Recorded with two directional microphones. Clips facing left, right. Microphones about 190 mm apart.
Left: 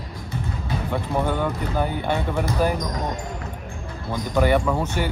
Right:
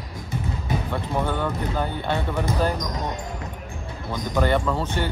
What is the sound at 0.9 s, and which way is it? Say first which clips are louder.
Speech: left 4 dB; 10° left (ahead or behind).